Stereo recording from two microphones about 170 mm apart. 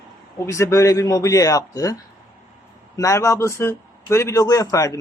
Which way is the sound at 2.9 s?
20° left (ahead or behind).